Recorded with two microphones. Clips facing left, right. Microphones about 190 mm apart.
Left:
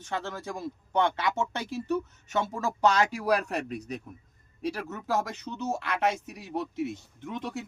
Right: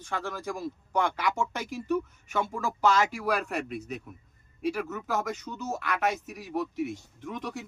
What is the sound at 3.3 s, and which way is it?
Speech, 35° left (ahead or behind).